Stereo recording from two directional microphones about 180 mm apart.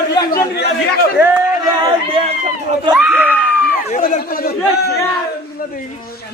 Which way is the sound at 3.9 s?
45° left (ahead or behind).